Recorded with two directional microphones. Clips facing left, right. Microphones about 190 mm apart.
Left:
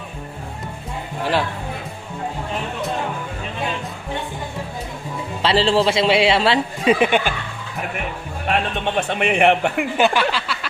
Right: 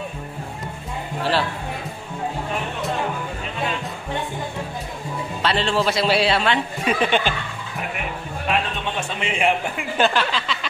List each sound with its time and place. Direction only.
5.4 s a man's voice: 30° left (ahead or behind)
7.0 s speech: 10° left (ahead or behind)
8.5 s speech: 60° left (ahead or behind)
9.9 s speech: 10° left (ahead or behind)